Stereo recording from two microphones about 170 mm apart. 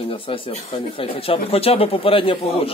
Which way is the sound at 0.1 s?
35° left (ahead or behind).